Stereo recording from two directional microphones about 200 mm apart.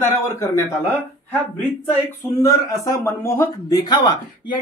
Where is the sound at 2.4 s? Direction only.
15° left (ahead or behind).